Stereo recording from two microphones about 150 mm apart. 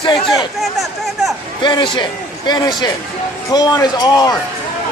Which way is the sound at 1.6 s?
30° left (ahead or behind).